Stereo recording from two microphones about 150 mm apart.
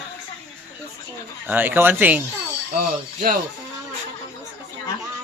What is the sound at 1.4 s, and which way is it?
Speech, 15° right (ahead or behind).